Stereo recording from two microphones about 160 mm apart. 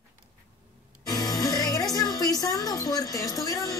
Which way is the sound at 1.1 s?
25° left (ahead or behind).